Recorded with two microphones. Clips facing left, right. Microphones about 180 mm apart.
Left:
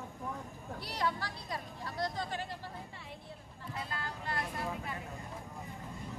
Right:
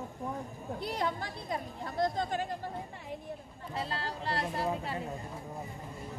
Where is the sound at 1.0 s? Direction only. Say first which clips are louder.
Right 2 dB; 25° right (ahead or behind).